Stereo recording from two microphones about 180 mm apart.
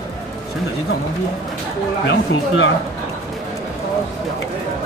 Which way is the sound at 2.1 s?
90° left.